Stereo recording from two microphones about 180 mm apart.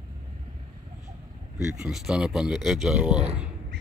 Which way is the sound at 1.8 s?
5° right (ahead or behind).